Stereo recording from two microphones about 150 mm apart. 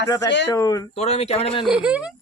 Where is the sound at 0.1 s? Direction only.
25° left (ahead or behind).